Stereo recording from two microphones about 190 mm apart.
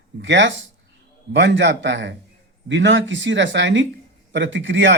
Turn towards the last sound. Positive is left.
turn(degrees=-70)  # may be behind; listen again after turning